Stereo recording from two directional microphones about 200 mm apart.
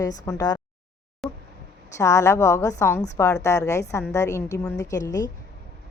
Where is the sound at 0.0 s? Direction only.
20° left (ahead or behind).